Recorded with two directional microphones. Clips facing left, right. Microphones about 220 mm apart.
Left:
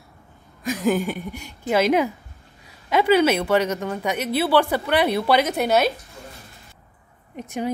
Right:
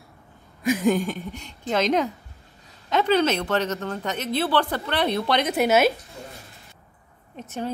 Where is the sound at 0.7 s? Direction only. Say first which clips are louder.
Left 4 dB; 5° left (ahead or behind).